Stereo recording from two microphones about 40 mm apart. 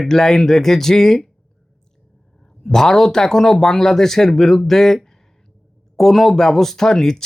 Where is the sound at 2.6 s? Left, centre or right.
Centre.